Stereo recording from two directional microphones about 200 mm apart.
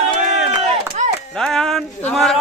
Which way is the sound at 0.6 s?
35° right (ahead or behind).